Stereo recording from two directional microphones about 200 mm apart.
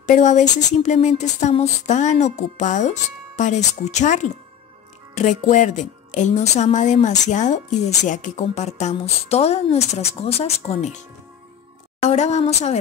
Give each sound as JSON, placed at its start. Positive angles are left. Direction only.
{"t": 0.0, "sound": "speech", "side_deg": 35}
{"t": 12.0, "sound": "speech", "side_deg": 35}